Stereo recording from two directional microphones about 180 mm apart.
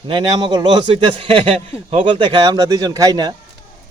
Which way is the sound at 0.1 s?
25° right (ahead or behind).